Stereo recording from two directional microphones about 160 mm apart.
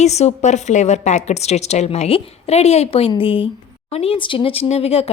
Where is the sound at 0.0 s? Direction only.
45° left (ahead or behind).